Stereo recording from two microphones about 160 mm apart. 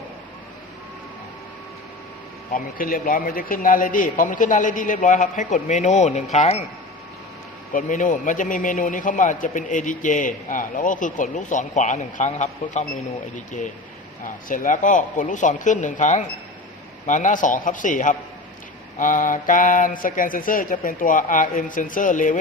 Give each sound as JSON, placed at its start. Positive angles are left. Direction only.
{"t": 2.5, "sound": "a man's voice", "side_deg": 60}
{"t": 7.7, "sound": "a man's voice", "side_deg": 55}